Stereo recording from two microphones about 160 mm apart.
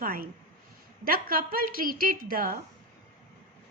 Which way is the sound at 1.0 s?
65° right (ahead or behind).